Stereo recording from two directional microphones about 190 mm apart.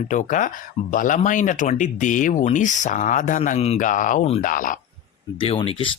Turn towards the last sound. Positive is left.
turn(degrees=30)  # may be behind; listen again after turning